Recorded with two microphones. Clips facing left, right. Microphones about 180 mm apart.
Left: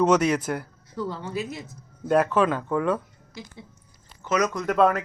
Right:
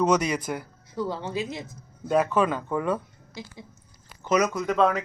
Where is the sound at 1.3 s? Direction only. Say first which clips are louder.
Even; 90° right.